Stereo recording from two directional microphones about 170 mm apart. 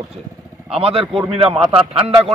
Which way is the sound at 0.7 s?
35° right (ahead or behind).